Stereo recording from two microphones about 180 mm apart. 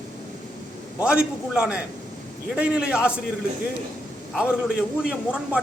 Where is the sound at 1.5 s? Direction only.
5° right (ahead or behind).